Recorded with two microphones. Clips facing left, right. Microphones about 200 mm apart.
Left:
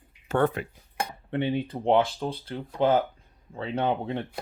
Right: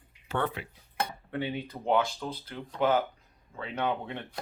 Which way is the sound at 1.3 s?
25° left (ahead or behind).